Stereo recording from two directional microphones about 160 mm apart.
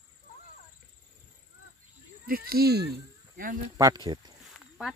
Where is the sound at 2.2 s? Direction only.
70° right (ahead or behind); by 2.9 s 85° right.